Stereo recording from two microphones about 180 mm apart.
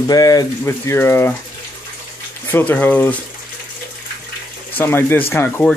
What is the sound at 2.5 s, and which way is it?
Speech, 10° left (ahead or behind).